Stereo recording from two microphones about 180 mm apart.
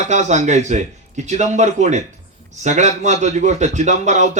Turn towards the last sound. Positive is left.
turn(degrees=-40)  # may be behind; listen again after turning